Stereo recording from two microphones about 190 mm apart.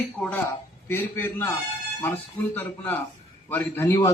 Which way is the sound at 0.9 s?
10° left (ahead or behind).